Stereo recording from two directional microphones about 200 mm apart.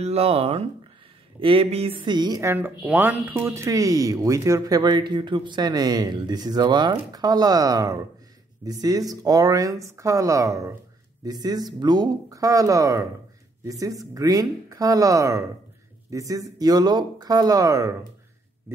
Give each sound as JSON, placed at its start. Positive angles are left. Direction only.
{"t": 0.0, "sound": "speech", "side_deg": -30}